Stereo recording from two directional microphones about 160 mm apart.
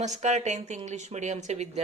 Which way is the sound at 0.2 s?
45° right (ahead or behind).